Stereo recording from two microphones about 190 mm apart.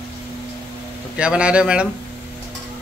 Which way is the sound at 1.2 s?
5° right (ahead or behind).